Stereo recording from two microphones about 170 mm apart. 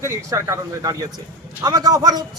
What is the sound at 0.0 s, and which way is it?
A man's voice, 15° right (ahead or behind).